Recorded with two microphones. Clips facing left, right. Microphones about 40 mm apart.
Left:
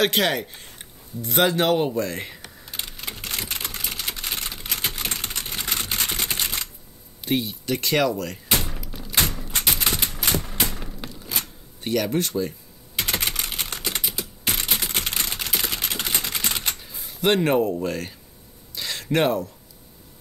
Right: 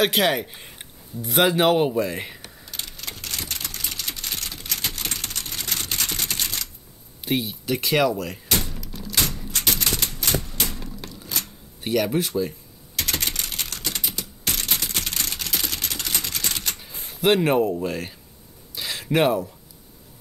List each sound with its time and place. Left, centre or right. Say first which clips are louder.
0.0 s speech: right 1 dB; centre
2.6 s a sound: left 2 dB; centre
3.8 s typing: left 2 dB; centre
7.2 s speech: even; centre
8.8 s music: right 2 dB; centre
9.4 s typewriter: left 1 dB; left
9.7 s typewriter: even; centre
10.8 s a sound: even; left
11.8 s speech: right 1 dB; centre
12.9 s typing: left 1 dB; left
17.1 s speech: right 1 dB; centre
18.8 s a sound: right 1 dB; centre